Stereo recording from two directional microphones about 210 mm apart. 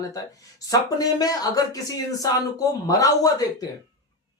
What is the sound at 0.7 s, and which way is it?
A woman's voice, 15° left (ahead or behind).